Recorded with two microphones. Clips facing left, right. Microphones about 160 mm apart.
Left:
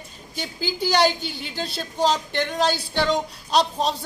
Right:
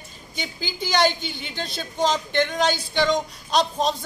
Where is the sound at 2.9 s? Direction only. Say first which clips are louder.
Right 1 dB; 5° left (ahead or behind).